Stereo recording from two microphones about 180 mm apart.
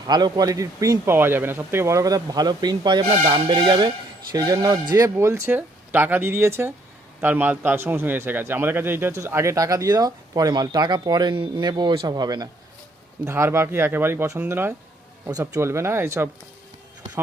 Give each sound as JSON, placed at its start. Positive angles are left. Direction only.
{"t": 0.1, "sound": "a man's voice", "side_deg": -25}